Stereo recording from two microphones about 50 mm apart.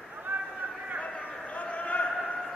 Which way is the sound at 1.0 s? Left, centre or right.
Left.